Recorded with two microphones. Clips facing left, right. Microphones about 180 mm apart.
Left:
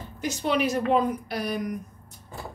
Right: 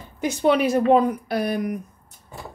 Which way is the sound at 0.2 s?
55° right (ahead or behind).